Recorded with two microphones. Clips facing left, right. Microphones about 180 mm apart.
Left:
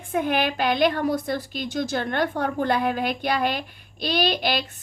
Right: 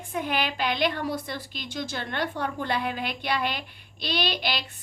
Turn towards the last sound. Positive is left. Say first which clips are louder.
# left 6 dB
turn(degrees=45)  # may be behind; listen again after turning